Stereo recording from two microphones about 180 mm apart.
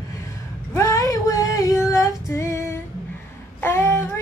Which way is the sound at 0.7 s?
15° left (ahead or behind).